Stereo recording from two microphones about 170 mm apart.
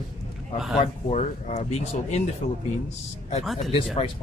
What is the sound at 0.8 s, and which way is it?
Speech, 40° left (ahead or behind).